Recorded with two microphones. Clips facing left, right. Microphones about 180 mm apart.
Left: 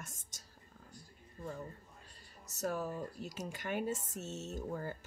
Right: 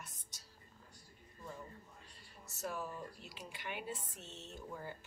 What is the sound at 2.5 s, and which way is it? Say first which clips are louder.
Speech: left 6 dB; 40° left (ahead or behind).